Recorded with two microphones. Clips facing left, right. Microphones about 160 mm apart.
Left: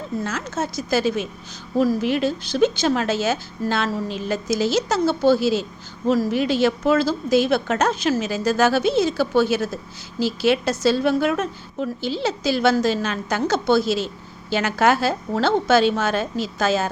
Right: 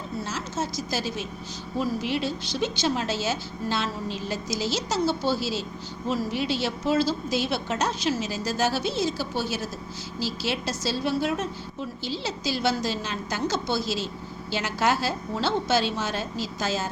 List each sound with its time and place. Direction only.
0.3 s a woman's voice: 55° left (ahead or behind)
1.8 s a woman's voice: 45° left (ahead or behind); by 16.9 s 60° left (ahead or behind)